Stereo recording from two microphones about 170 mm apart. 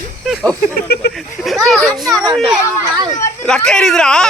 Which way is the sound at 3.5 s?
5° left (ahead or behind).